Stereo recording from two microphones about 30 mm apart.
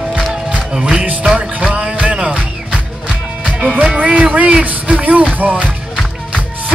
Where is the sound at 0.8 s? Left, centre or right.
Right.